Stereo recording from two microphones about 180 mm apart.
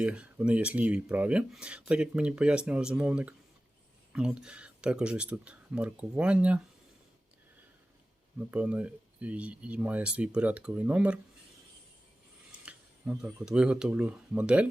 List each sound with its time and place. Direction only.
0.0 s speech: 5° right (ahead or behind)
8.4 s speech: 5° right (ahead or behind)
12.5 s speech: 5° right (ahead or behind)